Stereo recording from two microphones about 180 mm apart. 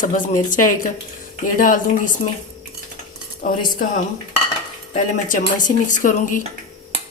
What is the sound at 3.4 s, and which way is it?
Speech, 40° left (ahead or behind).